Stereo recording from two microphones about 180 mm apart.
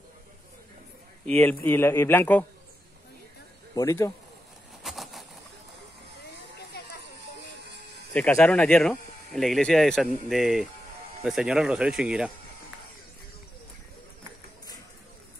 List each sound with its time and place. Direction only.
1.2 s a man's voice: 10° left (ahead or behind)
3.7 s a man's voice: 15° left (ahead or behind)
4.8 s a sound: centre (ahead or behind)
8.1 s speech: 5° left (ahead or behind)